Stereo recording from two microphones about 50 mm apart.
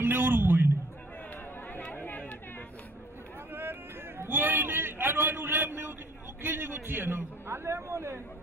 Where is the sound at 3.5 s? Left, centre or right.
Right.